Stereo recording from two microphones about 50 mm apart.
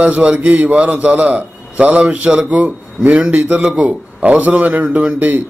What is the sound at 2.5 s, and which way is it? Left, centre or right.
A man's voice, right.